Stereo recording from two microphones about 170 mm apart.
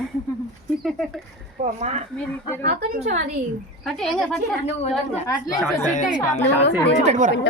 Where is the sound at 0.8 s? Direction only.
Centre (ahead or behind).